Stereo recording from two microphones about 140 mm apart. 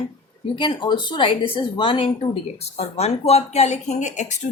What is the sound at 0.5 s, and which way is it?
Speech, 35° left (ahead or behind).